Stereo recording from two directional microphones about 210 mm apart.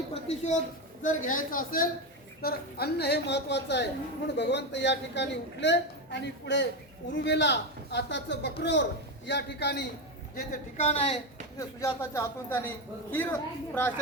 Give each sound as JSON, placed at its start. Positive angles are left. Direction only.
{"t": 1.0, "sound": "a woman's voice", "side_deg": 40}
{"t": 10.3, "sound": "a woman's voice", "side_deg": 35}
{"t": 11.5, "sound": "speech", "side_deg": 15}